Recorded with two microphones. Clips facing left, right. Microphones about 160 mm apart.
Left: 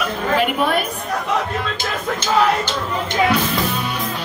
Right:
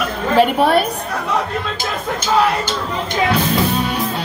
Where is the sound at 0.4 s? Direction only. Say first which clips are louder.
Right 8 dB; 35° right (ahead or behind).